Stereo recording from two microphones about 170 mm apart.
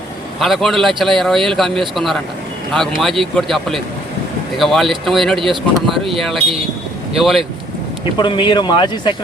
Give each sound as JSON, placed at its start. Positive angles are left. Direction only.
{"t": 0.3, "sound": "speech", "side_deg": 0}
{"t": 8.2, "sound": "speech", "side_deg": 25}